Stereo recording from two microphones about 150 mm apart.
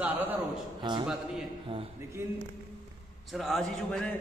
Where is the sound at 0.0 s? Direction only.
10° right (ahead or behind).